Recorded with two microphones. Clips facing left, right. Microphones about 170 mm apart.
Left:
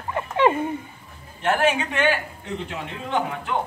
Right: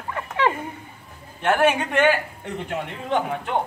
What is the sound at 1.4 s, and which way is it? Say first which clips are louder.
A man's voice: right 2 dB; 55° right (ahead or behind).